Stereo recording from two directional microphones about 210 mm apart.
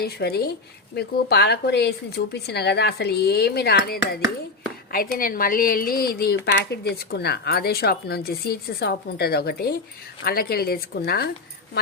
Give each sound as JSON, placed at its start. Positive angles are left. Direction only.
{"t": 0.0, "sound": "speech", "side_deg": 50}